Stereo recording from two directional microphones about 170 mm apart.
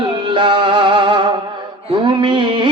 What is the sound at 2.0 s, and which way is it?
Mantra, 30° right (ahead or behind).